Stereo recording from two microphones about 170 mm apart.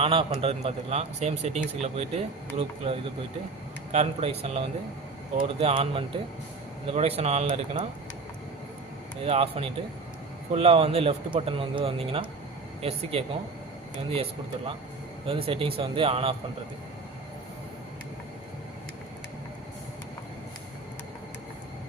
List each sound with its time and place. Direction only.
0.0 s speech: 35° right (ahead or behind)
9.2 s speech: 35° right (ahead or behind)
15.3 s speech: 35° right (ahead or behind)